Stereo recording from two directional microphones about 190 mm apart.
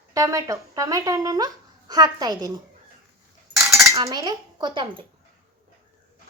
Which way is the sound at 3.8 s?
20° right (ahead or behind).